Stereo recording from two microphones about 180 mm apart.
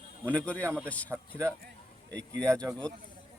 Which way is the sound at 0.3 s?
5° left (ahead or behind).